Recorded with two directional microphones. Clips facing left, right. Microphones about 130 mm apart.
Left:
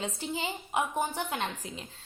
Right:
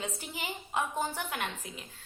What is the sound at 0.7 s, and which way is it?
Speech, 15° left (ahead or behind).